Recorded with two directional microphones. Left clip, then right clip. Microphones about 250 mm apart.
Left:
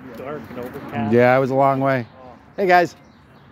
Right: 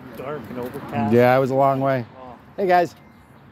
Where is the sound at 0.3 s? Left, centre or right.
Right.